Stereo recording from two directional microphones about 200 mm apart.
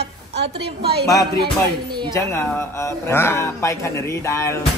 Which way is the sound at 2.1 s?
15° left (ahead or behind).